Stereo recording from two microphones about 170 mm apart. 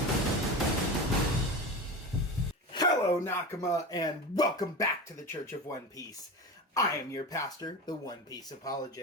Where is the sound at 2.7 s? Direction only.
25° left (ahead or behind).